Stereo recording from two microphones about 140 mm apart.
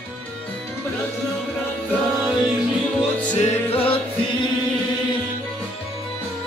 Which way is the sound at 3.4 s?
45° left (ahead or behind).